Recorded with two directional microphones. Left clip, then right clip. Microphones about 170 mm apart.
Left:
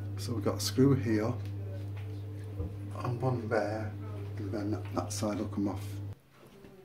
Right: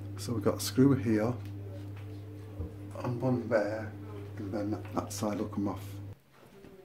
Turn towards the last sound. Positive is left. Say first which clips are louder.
# even
turn(degrees=-10)  # may be behind; listen again after turning